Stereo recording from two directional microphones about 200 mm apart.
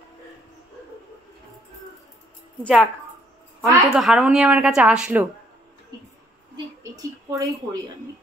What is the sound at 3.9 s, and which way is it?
A woman's voice, centre (ahead or behind).